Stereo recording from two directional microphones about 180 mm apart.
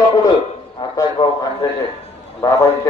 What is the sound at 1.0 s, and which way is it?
Speech, 25° left (ahead or behind).